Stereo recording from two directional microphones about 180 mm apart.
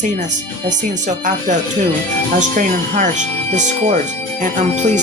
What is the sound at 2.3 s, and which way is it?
Speech, 45° right (ahead or behind).